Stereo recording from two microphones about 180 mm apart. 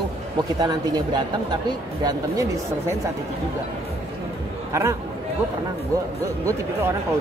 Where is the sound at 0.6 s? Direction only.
20° right (ahead or behind).